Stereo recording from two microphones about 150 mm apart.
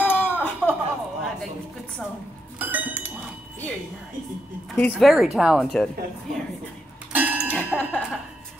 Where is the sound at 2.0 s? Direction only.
Centre (ahead or behind).